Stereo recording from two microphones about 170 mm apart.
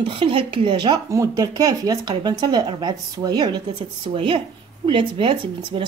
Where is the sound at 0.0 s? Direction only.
30° right (ahead or behind).